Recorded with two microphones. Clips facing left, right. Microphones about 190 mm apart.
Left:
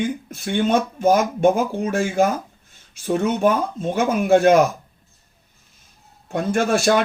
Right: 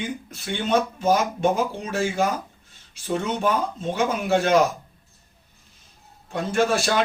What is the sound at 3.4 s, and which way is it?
Speech, 50° left (ahead or behind).